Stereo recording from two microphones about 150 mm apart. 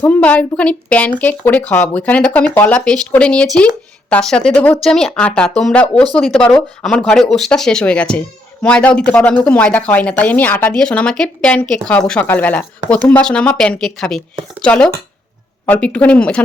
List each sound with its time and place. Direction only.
0.0 s speech: 10° left (ahead or behind)